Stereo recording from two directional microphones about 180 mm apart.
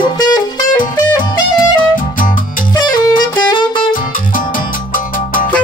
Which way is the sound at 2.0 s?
50° left (ahead or behind).